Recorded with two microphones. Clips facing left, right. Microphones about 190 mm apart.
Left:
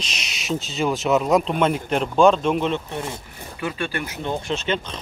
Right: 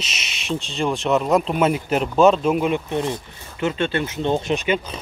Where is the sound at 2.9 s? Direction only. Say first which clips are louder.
Right 6 dB; 20° right (ahead or behind).